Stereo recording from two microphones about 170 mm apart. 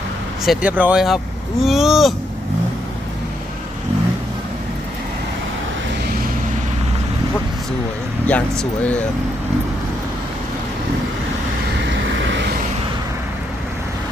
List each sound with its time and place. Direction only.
0.4 s speech: 5° right (ahead or behind)
8.3 s speech: 10° left (ahead or behind)
11.9 s vehicle: 90° right